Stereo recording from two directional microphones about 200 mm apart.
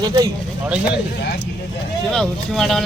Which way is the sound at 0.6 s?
5° right (ahead or behind).